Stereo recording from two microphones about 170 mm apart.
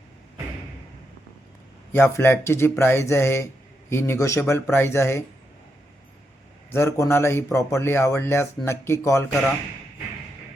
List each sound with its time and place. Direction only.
1.9 s speech: 15° left (ahead or behind)
6.7 s speech: 15° left (ahead or behind)